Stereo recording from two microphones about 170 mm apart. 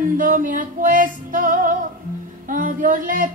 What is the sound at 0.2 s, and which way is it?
Speech, 50° right (ahead or behind).